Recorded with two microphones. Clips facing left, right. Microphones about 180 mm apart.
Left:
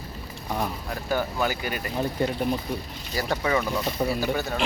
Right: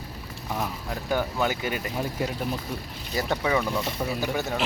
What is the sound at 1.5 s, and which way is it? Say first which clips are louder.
Speech: right 1 dB; 20° right (ahead or behind).